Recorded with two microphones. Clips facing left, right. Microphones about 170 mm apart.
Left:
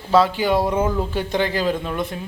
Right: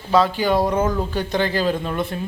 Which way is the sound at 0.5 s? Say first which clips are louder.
Even; 5° left (ahead or behind).